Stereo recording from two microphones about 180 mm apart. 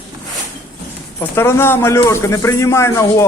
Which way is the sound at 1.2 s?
15° left (ahead or behind).